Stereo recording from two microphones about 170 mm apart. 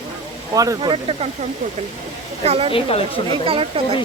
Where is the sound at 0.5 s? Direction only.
20° right (ahead or behind).